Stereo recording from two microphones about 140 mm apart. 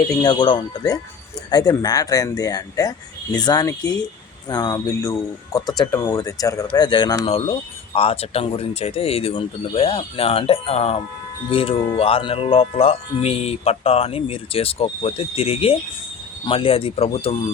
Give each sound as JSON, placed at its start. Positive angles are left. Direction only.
{"t": 0.0, "sound": "speech", "side_deg": 30}
{"t": 7.5, "sound": "speech", "side_deg": 45}